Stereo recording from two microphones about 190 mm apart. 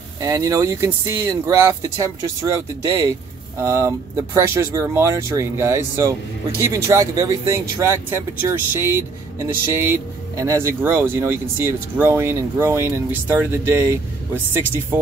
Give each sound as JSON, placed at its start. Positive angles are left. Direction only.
{"t": 0.2, "sound": "speech", "side_deg": -15}
{"t": 10.4, "sound": "speech", "side_deg": -10}